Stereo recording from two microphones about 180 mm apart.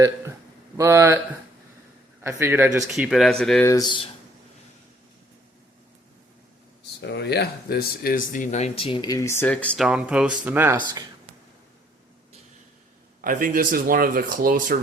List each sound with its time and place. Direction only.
0.8 s a man's voice: 15° right (ahead or behind)
2.2 s a man's voice: 10° right (ahead or behind)
2.9 s speech: centre (ahead or behind)
3.6 s speech: 20° left (ahead or behind)
7.0 s speech: 70° left (ahead or behind); by 10.8 s 10° right (ahead or behind)
10.8 s speech: 25° right (ahead or behind)
13.2 s speech: 50° right (ahead or behind)